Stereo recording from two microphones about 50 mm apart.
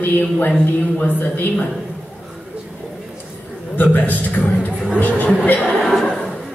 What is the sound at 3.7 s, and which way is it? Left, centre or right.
A man's voice, left.